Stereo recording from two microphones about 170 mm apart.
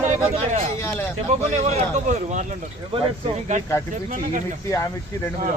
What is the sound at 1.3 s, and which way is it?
Speech, 45° right (ahead or behind).